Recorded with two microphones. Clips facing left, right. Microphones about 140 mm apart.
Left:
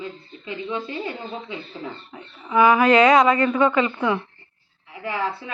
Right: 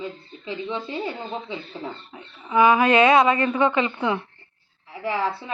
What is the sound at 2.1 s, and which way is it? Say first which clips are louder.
A woman's voice: left 1 dB; 25° right (ahead or behind).